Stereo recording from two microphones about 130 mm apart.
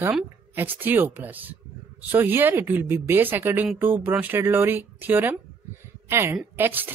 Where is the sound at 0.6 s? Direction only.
15° right (ahead or behind).